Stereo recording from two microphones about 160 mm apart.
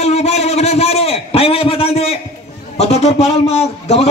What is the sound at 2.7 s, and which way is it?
A man's voice, 40° left (ahead or behind).